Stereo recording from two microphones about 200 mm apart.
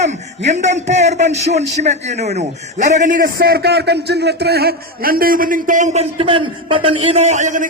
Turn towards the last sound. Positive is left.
turn(degrees=-35)  # may be behind; listen again after turning